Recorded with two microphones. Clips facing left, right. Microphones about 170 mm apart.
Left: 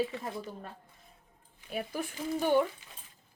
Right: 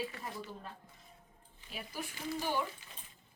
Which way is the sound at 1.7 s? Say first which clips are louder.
Left 8 dB; 55° left (ahead or behind).